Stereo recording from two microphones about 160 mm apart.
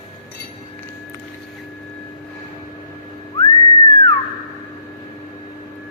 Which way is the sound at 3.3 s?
25° left (ahead or behind).